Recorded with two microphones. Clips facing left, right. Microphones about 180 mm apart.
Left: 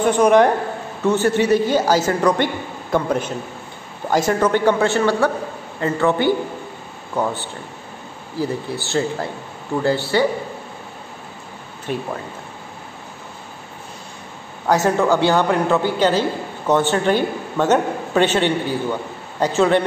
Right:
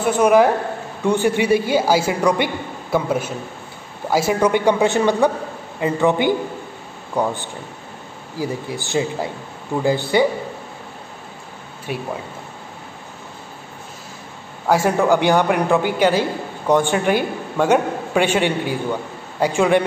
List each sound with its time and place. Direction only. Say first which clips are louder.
0.0 s a woman's voice: left 1 dB; 5° right (ahead or behind)
8.4 s a woman's voice: left 2 dB; 10° right (ahead or behind)
11.9 s a woman's voice: left 2 dB; 10° right (ahead or behind)
14.7 s a woman's voice: even; 10° right (ahead or behind)